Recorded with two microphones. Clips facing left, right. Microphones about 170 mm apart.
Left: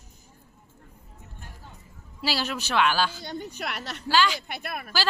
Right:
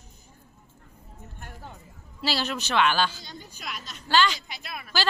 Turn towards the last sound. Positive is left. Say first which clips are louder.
# left 5 dB
turn(degrees=55)  # may be behind; listen again after turning